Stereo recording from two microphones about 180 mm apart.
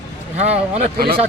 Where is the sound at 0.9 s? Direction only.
55° right (ahead or behind).